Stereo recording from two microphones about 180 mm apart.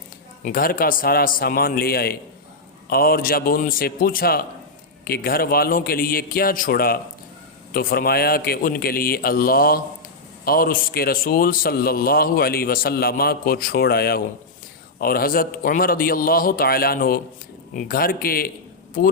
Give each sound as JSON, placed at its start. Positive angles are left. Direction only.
{"t": 0.4, "sound": "a man's voice", "side_deg": 55}